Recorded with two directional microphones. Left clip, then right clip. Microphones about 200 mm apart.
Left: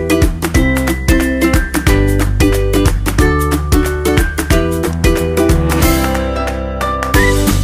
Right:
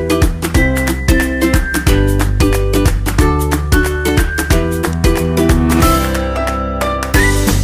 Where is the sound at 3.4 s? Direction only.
Centre (ahead or behind).